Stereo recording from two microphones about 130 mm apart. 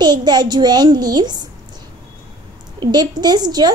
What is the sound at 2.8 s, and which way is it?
Speech, 35° right (ahead or behind).